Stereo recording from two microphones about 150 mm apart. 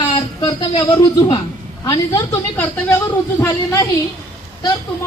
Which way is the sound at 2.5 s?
10° left (ahead or behind).